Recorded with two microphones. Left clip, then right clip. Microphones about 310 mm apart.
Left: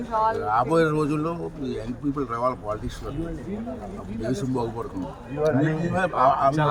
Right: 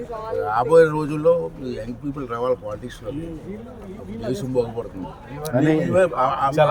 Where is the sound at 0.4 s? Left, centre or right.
Centre.